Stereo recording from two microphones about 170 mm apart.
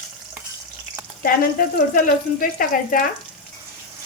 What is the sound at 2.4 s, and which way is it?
Speech, 55° left (ahead or behind).